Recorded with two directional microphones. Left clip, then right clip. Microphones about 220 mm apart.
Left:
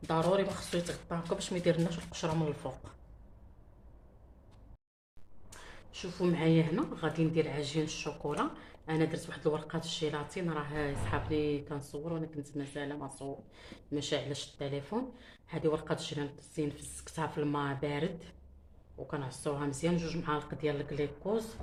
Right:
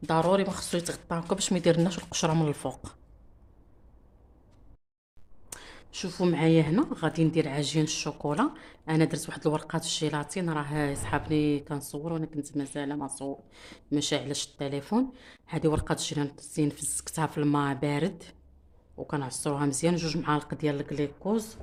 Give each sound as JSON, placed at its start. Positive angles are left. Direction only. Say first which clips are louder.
{"t": 0.1, "sound": "speech", "louder": "right 5 dB", "side_deg": -50}
{"t": 5.5, "sound": "speech", "louder": "right 6 dB", "side_deg": -50}